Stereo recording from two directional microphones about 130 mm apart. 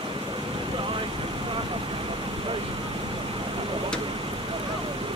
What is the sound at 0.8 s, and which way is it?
Vehicle, 40° right (ahead or behind).